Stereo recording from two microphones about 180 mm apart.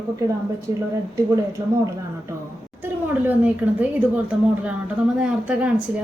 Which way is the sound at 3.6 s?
10° right (ahead or behind).